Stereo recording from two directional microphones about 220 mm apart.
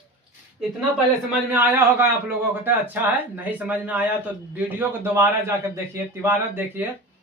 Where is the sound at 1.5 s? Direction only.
10° right (ahead or behind).